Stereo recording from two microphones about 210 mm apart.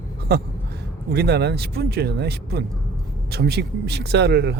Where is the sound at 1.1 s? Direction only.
50° right (ahead or behind).